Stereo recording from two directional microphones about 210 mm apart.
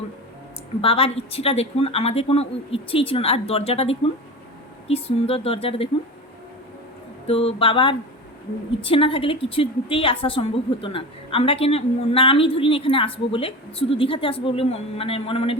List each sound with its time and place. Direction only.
0.8 s a woman's voice: 25° left (ahead or behind)
7.3 s a woman's voice: 25° left (ahead or behind)